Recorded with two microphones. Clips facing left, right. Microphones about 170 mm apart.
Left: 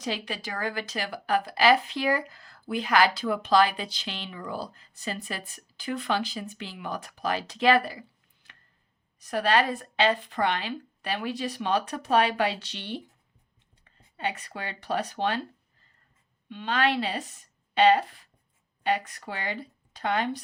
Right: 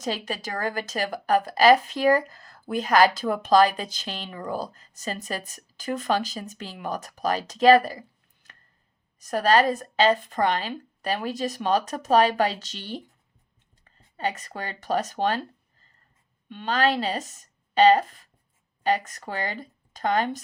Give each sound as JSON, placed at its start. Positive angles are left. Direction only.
{"t": 0.0, "sound": "a woman's voice", "side_deg": -45}
{"t": 9.1, "sound": "a woman's voice", "side_deg": -40}
{"t": 14.2, "sound": "a woman's voice", "side_deg": -40}
{"t": 16.5, "sound": "speech", "side_deg": -45}